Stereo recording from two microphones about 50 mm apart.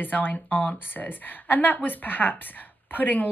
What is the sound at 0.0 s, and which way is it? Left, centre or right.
Speech, left.